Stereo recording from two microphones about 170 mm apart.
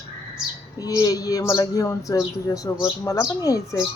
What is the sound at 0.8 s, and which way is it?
A woman's voice, 20° left (ahead or behind).